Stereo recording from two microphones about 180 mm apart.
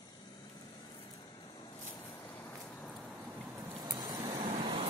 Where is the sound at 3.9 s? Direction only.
20° right (ahead or behind).